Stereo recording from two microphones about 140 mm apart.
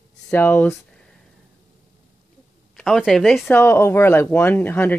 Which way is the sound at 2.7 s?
Centre (ahead or behind).